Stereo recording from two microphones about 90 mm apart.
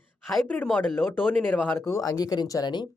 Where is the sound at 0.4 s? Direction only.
15° left (ahead or behind); by 2.7 s 45° left (ahead or behind).